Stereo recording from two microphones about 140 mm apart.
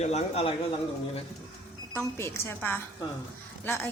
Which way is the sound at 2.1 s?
20° left (ahead or behind).